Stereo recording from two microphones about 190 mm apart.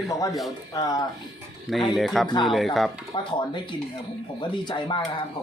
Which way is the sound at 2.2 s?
25° left (ahead or behind).